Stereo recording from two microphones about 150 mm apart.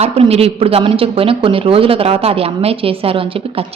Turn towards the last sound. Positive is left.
turn(degrees=-40)  # may be behind; listen again after turning